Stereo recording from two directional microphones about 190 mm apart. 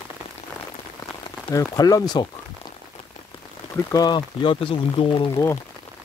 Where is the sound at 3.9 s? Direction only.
20° left (ahead or behind).